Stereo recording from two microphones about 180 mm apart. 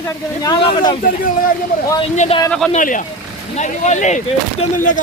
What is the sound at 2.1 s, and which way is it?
Speech, 35° left (ahead or behind).